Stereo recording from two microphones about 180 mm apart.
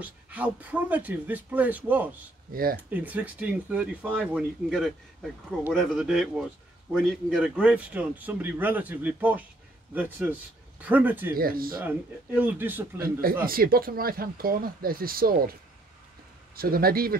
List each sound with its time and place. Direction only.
0.0 s a man's voice: 10° right (ahead or behind)
2.5 s speech: 55° right (ahead or behind)
2.9 s a man's voice: 10° right (ahead or behind)
11.3 s speech: 55° right (ahead or behind)
11.8 s a man's voice: 10° right (ahead or behind)
13.0 s speech: 55° right (ahead or behind)
16.5 s speech: 55° right (ahead or behind)